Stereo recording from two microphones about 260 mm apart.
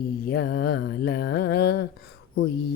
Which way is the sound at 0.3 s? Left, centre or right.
Left.